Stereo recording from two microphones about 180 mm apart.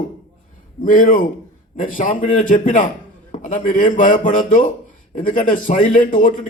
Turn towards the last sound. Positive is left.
turn(degrees=50)  # may be behind; listen again after turning